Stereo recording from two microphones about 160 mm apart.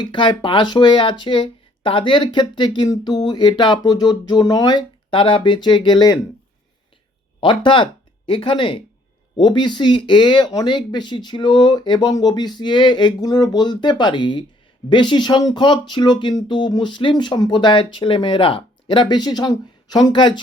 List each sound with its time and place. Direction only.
0.0 s speech: 30° left (ahead or behind)
7.4 s speech: 30° left (ahead or behind)